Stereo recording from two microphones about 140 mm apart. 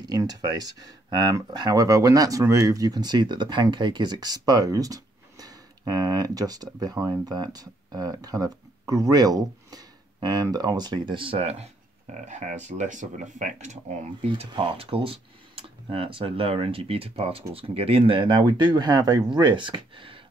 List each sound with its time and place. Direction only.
0.0 s speech: 30° right (ahead or behind); by 14.5 s 55° right (ahead or behind)
14.5 s speech: 40° right (ahead or behind)